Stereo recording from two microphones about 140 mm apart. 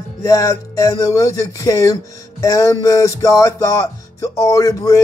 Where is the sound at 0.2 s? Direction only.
25° left (ahead or behind).